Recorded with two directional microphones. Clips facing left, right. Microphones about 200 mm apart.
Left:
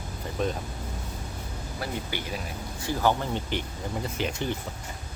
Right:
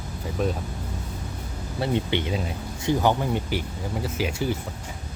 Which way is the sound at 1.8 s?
25° right (ahead or behind).